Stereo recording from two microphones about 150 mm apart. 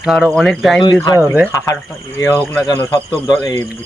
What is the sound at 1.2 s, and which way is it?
Speech, 10° right (ahead or behind).